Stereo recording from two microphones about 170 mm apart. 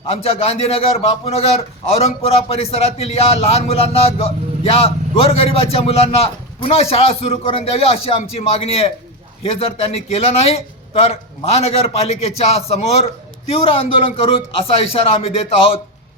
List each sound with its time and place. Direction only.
0.1 s a man's voice: 35° left (ahead or behind)